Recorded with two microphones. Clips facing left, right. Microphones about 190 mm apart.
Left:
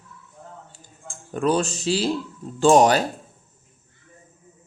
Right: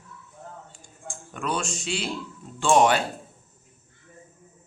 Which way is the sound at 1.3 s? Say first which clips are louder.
Left 8 dB; 35° left (ahead or behind).